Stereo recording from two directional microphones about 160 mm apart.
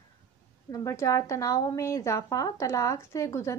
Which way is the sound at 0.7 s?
20° left (ahead or behind).